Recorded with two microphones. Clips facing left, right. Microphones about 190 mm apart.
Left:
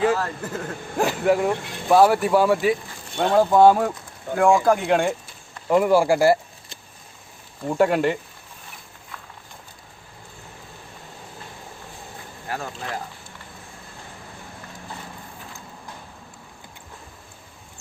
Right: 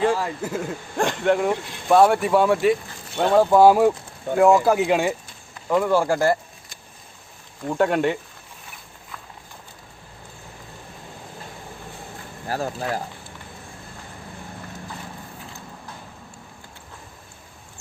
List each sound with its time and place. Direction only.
0.1 s speech: 10° right (ahead or behind)
0.9 s speech: 5° left (ahead or behind)
5.6 s speech: 10° left (ahead or behind)
7.7 s speech: 5° left (ahead or behind)
12.5 s speech: 35° right (ahead or behind)